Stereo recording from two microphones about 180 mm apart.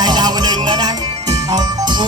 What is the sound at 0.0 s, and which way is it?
Music, 25° right (ahead or behind).